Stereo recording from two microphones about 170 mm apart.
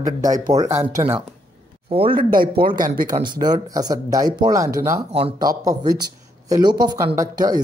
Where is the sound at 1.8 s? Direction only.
30° right (ahead or behind).